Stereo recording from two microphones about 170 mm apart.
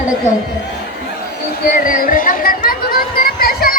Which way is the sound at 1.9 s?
55° left (ahead or behind).